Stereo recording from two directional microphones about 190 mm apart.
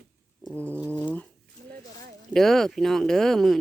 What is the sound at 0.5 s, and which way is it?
Speech, 10° left (ahead or behind).